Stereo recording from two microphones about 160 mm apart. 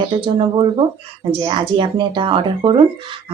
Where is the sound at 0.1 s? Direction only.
35° right (ahead or behind).